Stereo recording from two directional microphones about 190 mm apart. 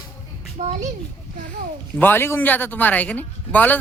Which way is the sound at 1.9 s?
10° left (ahead or behind).